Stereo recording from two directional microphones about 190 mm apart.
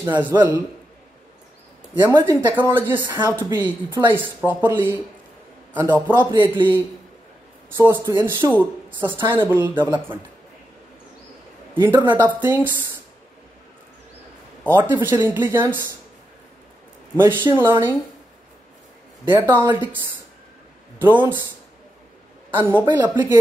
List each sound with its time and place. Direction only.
0.0 s a woman's voice: 10° right (ahead or behind)
2.0 s a woman's voice: 10° right (ahead or behind)
11.8 s a woman's voice: 10° right (ahead or behind)
14.7 s a woman's voice: 10° right (ahead or behind)
17.2 s a woman's voice: 10° right (ahead or behind)
19.2 s a woman's voice: 10° right (ahead or behind)
21.0 s a woman's voice: 10° right (ahead or behind)
22.6 s a woman's voice: 10° right (ahead or behind)